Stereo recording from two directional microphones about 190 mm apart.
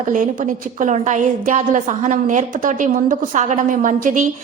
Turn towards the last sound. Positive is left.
turn(degrees=-45)  # may be behind; listen again after turning